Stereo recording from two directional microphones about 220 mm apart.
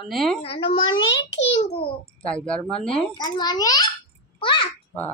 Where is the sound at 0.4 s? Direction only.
25° left (ahead or behind).